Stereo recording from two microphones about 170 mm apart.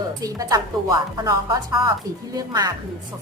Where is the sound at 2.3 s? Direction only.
25° right (ahead or behind).